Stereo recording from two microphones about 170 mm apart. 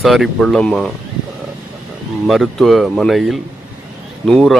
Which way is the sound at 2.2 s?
Centre (ahead or behind).